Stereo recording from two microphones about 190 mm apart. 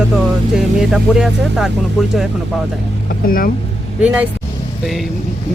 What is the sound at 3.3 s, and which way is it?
Speech, 50° left (ahead or behind).